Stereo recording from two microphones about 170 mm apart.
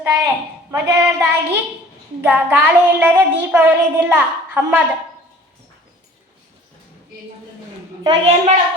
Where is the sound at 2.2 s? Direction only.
10° right (ahead or behind).